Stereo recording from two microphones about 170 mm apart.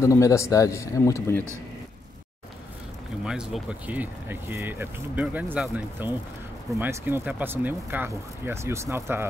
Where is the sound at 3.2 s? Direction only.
5° right (ahead or behind).